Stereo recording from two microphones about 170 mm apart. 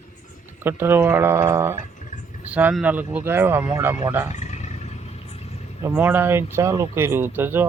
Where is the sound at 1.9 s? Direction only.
45° left (ahead or behind).